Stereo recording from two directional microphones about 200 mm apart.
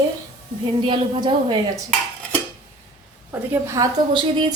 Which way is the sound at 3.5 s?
15° right (ahead or behind).